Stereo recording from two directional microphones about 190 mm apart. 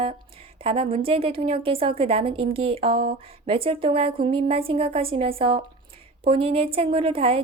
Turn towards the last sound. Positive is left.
turn(degrees=-30)  # may be behind; listen again after turning